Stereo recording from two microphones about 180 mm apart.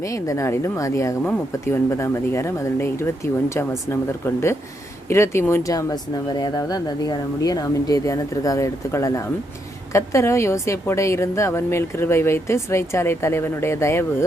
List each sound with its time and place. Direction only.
0.0 s a woman's voice: 15° left (ahead or behind)
5.0 s a woman's voice: 15° left (ahead or behind)